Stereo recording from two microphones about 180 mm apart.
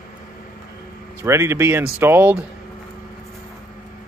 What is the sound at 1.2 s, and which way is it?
Speech, 15° right (ahead or behind).